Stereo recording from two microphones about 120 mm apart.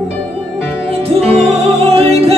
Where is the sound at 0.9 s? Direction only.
60° right (ahead or behind).